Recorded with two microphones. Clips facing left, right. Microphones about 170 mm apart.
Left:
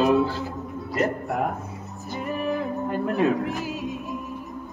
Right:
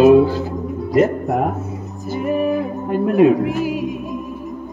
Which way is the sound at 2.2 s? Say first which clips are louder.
Right 8 dB; 15° right (ahead or behind).